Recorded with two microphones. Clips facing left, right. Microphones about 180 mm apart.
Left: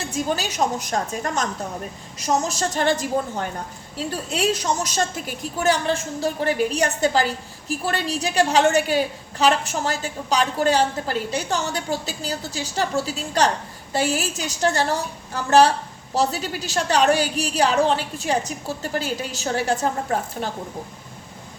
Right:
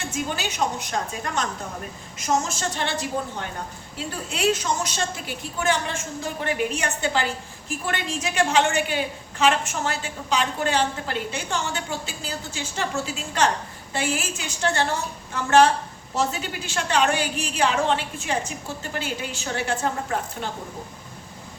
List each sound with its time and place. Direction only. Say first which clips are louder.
0.1 s a woman's voice: left 5 dB; 35° left (ahead or behind)